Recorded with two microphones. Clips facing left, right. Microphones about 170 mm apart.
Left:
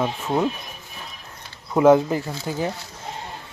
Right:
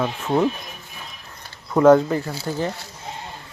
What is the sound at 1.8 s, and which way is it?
Speech, 15° left (ahead or behind).